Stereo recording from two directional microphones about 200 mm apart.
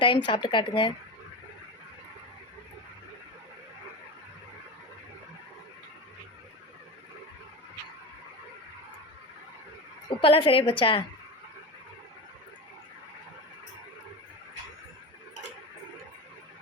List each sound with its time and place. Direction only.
0.0 s a woman's voice: 25° left (ahead or behind)
10.1 s a woman's voice: 25° left (ahead or behind)